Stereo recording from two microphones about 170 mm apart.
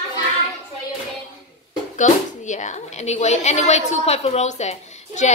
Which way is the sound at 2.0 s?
45° left (ahead or behind).